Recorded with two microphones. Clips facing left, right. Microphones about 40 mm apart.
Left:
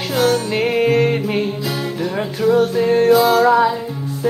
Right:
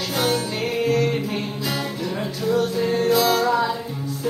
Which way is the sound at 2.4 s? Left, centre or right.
Left.